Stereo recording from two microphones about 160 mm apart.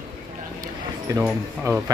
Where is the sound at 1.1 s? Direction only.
20° right (ahead or behind).